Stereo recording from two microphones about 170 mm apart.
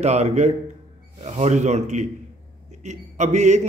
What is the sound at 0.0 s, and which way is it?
A man's voice, 40° right (ahead or behind).